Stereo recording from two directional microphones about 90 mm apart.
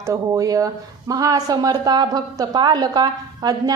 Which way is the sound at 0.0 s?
35° right (ahead or behind).